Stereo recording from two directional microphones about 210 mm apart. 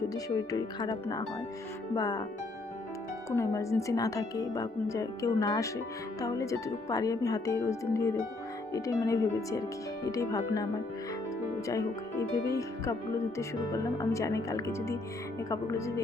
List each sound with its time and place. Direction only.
0.1 s speech: 15° left (ahead or behind)
3.2 s speech: 15° left (ahead or behind)
11.7 s speech: 15° left (ahead or behind)